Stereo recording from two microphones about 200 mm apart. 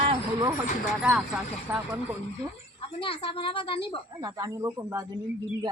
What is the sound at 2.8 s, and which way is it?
A woman's voice, 25° left (ahead or behind).